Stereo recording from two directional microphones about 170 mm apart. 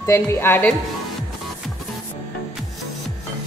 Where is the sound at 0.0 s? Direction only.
15° left (ahead or behind).